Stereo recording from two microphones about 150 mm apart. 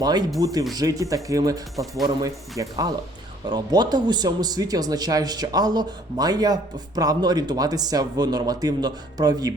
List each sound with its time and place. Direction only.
0.0 s speech: 30° right (ahead or behind)